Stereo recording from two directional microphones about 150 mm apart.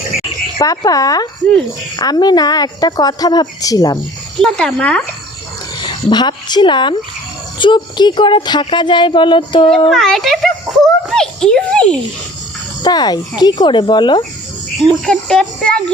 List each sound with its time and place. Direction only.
0.9 s a woman's voice: 25° left (ahead or behind)
4.4 s a child's voice: 5° left (ahead or behind)
5.7 s speech: 30° left (ahead or behind)
9.9 s a child's voice: 5° left (ahead or behind)
12.8 s a woman's voice: 25° left (ahead or behind)
14.8 s a child's voice: 5° left (ahead or behind)